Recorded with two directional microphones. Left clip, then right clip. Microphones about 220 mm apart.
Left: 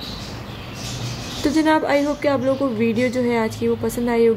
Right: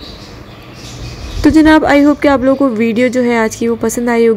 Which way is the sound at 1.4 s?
25° right (ahead or behind).